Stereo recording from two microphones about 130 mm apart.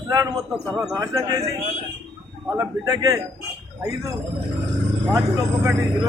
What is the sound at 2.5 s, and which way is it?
Speech, 25° right (ahead or behind).